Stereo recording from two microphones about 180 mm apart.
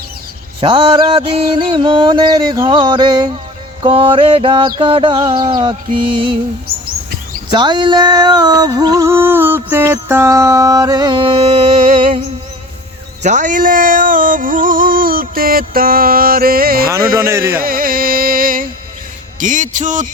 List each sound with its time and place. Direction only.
0.6 s music: 30° right (ahead or behind)
7.5 s music: 25° right (ahead or behind)
13.2 s a sound: 45° right (ahead or behind)
17.2 s speech: 15° right (ahead or behind)
17.6 s music: 55° right (ahead or behind)
19.4 s speech: 45° right (ahead or behind)